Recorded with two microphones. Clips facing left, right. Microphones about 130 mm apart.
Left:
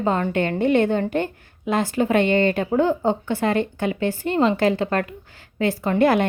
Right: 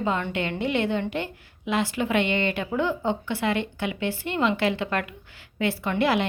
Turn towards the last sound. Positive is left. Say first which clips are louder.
# left 5 dB
turn(degrees=45)  # may be behind; listen again after turning